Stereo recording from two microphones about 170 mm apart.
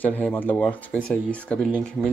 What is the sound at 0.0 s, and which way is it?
Speech, 10° left (ahead or behind).